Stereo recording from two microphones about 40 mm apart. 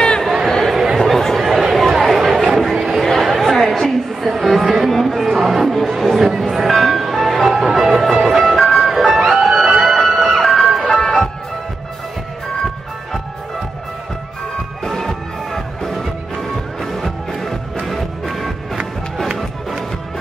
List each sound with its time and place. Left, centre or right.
0.2 s a sound: centre
0.5 s chatter: centre
4.3 s a sound: centre
4.9 s music: centre
8.5 s music: centre
10.0 s music: centre
10.8 s music: centre
14.9 s music: centre